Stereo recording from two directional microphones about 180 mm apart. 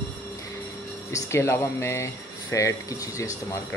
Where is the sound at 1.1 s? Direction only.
15° left (ahead or behind).